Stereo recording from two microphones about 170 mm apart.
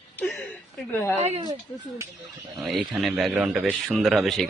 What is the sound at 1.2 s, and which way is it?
Speech, 40° right (ahead or behind).